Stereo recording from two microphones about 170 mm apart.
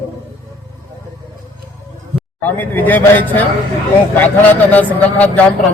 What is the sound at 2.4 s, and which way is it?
A man's voice, 10° left (ahead or behind).